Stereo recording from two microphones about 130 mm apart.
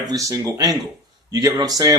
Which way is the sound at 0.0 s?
30° right (ahead or behind).